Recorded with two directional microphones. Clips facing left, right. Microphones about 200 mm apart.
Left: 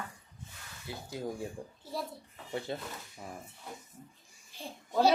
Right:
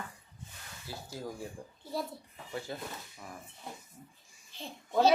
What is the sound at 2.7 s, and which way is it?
Speech, 25° left (ahead or behind).